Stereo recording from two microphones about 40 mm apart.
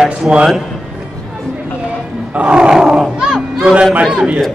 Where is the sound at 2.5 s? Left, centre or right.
Centre.